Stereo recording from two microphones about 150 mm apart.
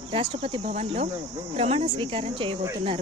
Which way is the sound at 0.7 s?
45° right (ahead or behind).